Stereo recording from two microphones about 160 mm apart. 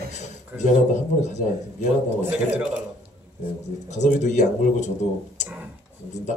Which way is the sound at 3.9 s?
45° left (ahead or behind).